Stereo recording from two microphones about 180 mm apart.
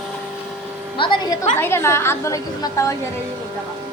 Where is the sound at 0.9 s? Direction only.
25° left (ahead or behind).